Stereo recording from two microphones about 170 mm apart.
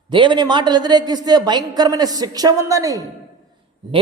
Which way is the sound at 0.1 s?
30° right (ahead or behind).